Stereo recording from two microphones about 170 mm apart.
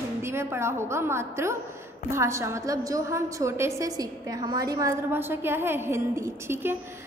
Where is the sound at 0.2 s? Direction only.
15° right (ahead or behind).